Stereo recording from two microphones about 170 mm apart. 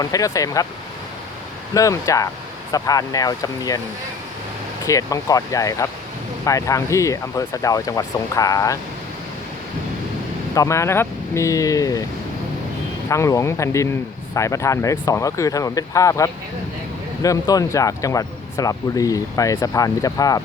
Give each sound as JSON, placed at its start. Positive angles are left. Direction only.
{"t": 0.0, "sound": "speech", "side_deg": 20}
{"t": 1.7, "sound": "speech", "side_deg": 20}
{"t": 4.9, "sound": "speech", "side_deg": 20}
{"t": 10.5, "sound": "speech", "side_deg": 20}
{"t": 13.1, "sound": "speech", "side_deg": 20}